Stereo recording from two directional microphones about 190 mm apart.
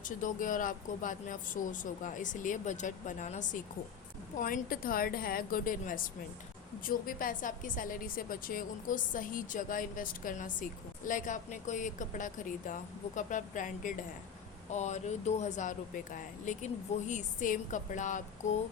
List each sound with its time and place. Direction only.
0.0 s a woman's voice: 45° left (ahead or behind)